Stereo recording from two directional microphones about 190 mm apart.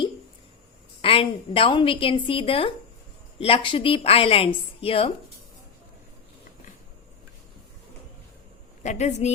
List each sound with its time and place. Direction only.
1.0 s a woman's voice: 30° left (ahead or behind)
8.8 s a woman's voice: 40° left (ahead or behind)